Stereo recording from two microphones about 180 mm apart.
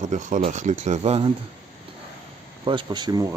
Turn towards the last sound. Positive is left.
turn(degrees=-25)  # may be behind; listen again after turning